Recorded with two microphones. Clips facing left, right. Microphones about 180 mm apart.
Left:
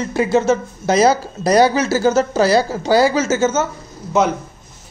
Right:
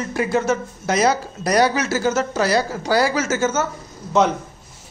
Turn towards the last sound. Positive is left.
turn(degrees=5)  # may be behind; listen again after turning